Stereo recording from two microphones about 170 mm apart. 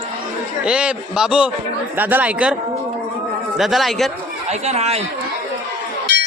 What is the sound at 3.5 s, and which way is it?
Speech, centre (ahead or behind).